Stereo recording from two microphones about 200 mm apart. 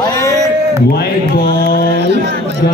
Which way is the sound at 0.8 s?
50° left (ahead or behind).